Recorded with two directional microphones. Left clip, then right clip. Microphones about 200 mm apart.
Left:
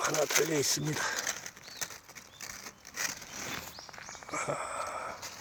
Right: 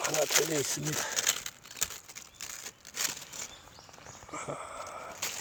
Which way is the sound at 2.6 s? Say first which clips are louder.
Right 1 dB; 25° right (ahead or behind).